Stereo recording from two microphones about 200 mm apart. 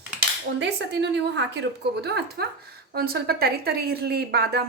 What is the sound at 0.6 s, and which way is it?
A woman's voice, 60° right (ahead or behind).